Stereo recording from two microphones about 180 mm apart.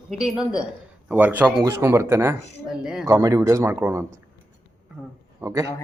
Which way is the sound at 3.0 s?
20° right (ahead or behind).